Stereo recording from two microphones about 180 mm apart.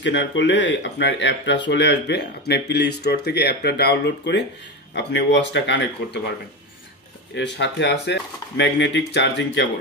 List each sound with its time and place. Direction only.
0.0 s speech: 80° left
7.3 s speech: 80° left